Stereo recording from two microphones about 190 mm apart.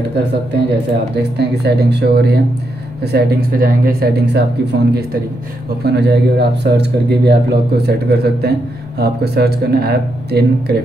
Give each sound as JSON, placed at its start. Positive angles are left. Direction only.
{"t": 1.1, "sound": "speech", "side_deg": -60}